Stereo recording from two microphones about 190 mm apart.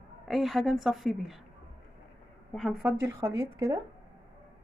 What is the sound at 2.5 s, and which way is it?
A woman's voice, centre (ahead or behind).